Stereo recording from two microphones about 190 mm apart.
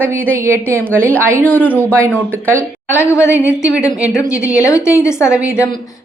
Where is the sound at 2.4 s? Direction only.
10° right (ahead or behind).